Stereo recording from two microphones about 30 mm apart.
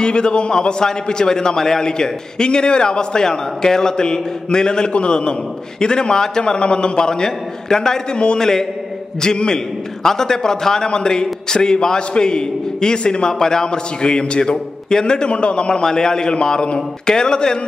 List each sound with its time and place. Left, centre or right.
0.0 s a man's voice: left
13.3 s a man's voice: centre